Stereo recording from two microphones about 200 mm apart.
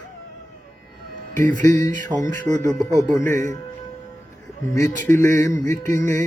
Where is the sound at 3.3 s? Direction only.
40° right (ahead or behind).